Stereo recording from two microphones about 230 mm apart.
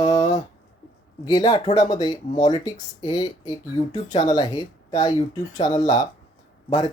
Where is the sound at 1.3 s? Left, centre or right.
Centre.